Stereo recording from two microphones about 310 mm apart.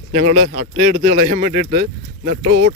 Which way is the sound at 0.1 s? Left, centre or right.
Right.